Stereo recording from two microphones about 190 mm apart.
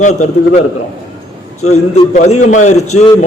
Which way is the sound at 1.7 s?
35° left (ahead or behind).